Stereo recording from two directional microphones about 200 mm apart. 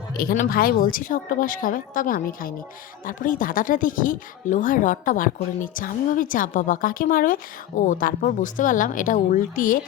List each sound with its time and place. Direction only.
0.2 s a woman's voice: 50° left (ahead or behind)